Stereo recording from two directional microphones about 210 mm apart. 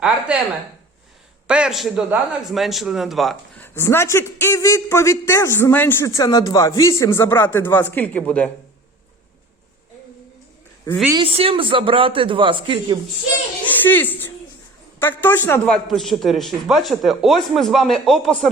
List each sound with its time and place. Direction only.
0.3 s a man's voice: 5° right (ahead or behind)
1.5 s a man's voice: 5° right (ahead or behind)
3.8 s a man's voice: 10° left (ahead or behind)
11.2 s speech: 25° right (ahead or behind)
13.7 s a sound: 10° left (ahead or behind)
14.9 s a man's voice: 10° left (ahead or behind)